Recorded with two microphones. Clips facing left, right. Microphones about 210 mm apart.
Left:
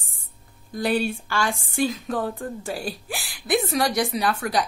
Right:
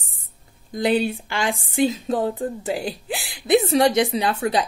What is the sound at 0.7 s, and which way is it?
Speech, 20° right (ahead or behind).